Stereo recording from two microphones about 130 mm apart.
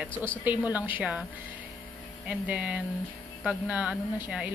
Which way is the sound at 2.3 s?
10° right (ahead or behind).